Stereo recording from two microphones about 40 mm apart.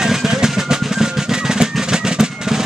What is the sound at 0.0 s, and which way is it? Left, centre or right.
Music, centre.